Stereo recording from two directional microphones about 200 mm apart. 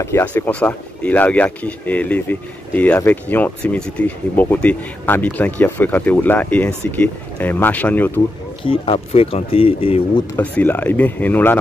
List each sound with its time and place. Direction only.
0.0 s speech: 10° left (ahead or behind)
8.6 s speech: 25° left (ahead or behind)
10.3 s speech: 10° left (ahead or behind)